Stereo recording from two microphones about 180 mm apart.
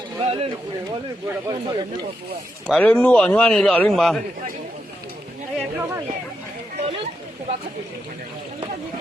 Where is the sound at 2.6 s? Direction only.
5° left (ahead or behind).